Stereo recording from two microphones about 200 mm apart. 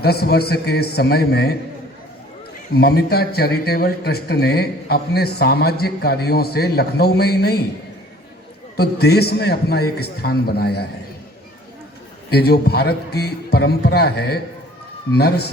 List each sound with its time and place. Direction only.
0.0 s speech: 50° left (ahead or behind)
2.7 s speech: 50° left (ahead or behind)
8.7 s speech: 50° left (ahead or behind)
12.3 s speech: 50° left (ahead or behind)